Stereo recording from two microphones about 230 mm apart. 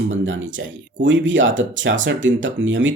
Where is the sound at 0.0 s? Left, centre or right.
Right.